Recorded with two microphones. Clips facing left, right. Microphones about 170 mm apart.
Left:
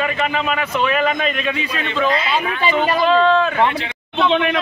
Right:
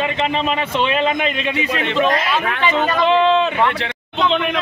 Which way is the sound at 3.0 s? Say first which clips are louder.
Even; 20° right (ahead or behind).